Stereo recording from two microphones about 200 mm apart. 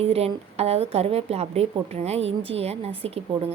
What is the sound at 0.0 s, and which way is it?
A woman's voice, 30° right (ahead or behind).